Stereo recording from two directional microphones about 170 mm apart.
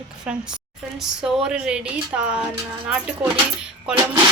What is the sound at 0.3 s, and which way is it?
Speech, 5° right (ahead or behind).